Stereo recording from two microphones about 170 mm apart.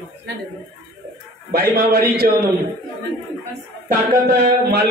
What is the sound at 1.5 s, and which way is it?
Speech, 65° right (ahead or behind).